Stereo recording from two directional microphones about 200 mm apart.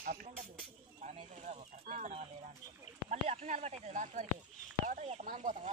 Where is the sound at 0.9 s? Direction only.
35° right (ahead or behind).